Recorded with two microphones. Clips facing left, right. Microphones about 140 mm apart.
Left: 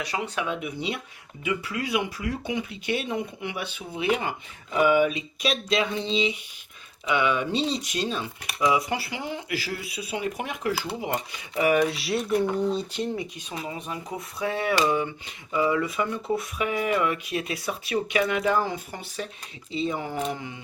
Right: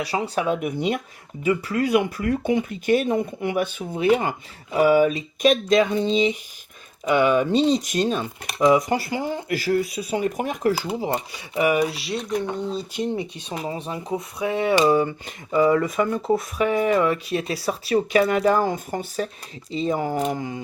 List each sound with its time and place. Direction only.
0.0 s speech: 35° right (ahead or behind)
11.6 s speech: 10° right (ahead or behind)
13.1 s speech: 30° right (ahead or behind)
14.8 s speech: 40° right (ahead or behind)